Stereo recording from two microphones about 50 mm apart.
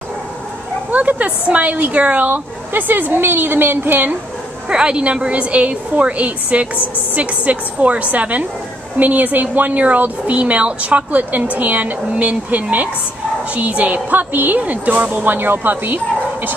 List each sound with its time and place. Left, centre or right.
0.9 s a woman's voice: right
2.7 s a woman's voice: right
4.6 s a woman's voice: centre; by 16.0 s right